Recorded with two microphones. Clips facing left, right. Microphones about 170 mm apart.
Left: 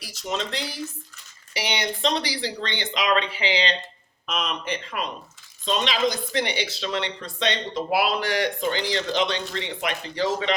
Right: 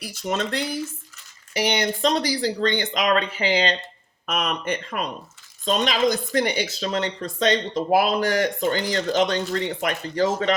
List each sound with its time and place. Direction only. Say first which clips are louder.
0.0 s speech: right 4 dB; 55° right (ahead or behind)